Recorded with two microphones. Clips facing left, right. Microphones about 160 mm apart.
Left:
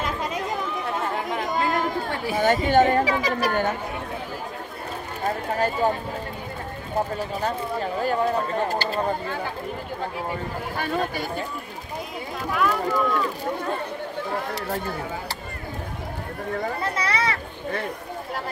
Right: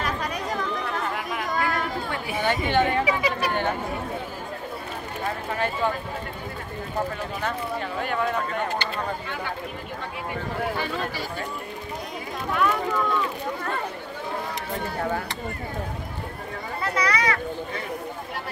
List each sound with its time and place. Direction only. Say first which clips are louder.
0.0 s chatter: left 1 dB; 20° left (ahead or behind)
2.0 s chatter: left 5 dB; 35° left (ahead or behind)
5.2 s speech: left 4 dB; 40° left (ahead or behind)
7.4 s speech: left 2 dB; 35° left (ahead or behind)
10.8 s speech: left 3 dB; 55° left (ahead or behind)
12.5 s speech: left 1 dB; centre (ahead or behind)
16.8 s children playing: right 5 dB; 25° left (ahead or behind)